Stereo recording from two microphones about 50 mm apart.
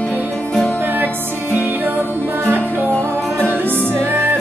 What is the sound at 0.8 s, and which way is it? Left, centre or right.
Music, right.